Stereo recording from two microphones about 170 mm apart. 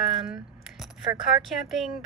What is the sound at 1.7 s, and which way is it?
Speech, centre (ahead or behind).